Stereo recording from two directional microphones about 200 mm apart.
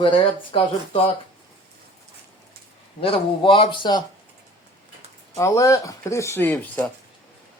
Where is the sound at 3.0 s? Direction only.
25° left (ahead or behind).